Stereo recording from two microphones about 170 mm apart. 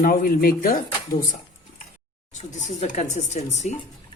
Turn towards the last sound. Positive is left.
turn(degrees=40)  # may be behind; listen again after turning